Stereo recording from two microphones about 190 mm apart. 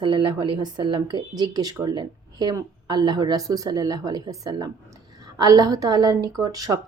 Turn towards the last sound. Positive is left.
turn(degrees=-20)  # may be behind; listen again after turning